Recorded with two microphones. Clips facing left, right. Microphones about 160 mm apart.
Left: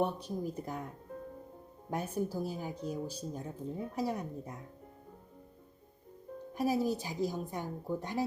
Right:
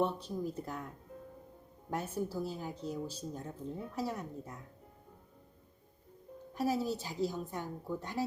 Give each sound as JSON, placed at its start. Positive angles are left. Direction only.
{"t": 0.0, "sound": "speech", "side_deg": 15}
{"t": 1.9, "sound": "speech", "side_deg": 15}
{"t": 6.5, "sound": "speech", "side_deg": 15}